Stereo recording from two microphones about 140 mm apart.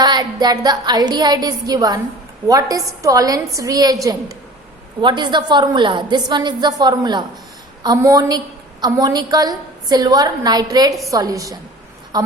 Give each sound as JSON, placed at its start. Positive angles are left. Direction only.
{"t": 0.0, "sound": "a woman's voice", "side_deg": -30}